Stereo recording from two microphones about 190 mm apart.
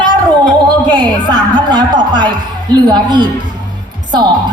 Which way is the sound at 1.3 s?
25° right (ahead or behind).